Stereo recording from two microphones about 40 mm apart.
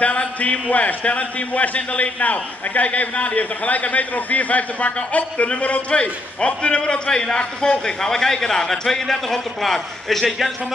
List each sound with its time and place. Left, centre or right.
0.4 s a man's voice: left; by 10.5 s centre